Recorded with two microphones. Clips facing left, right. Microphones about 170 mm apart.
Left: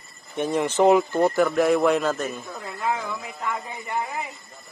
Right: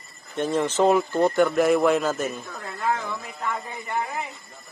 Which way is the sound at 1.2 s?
Centre (ahead or behind).